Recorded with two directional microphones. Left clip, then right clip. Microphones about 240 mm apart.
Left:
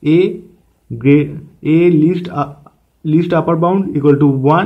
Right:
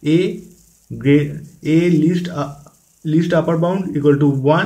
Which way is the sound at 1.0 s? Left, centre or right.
Left.